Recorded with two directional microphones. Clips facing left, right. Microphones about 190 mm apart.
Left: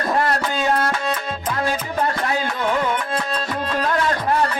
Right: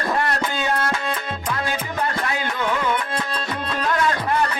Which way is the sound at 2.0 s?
35° left (ahead or behind).